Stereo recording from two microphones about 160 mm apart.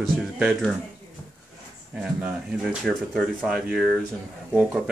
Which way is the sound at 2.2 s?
5° right (ahead or behind).